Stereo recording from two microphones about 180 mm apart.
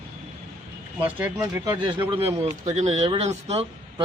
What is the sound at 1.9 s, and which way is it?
A man's voice, 25° right (ahead or behind).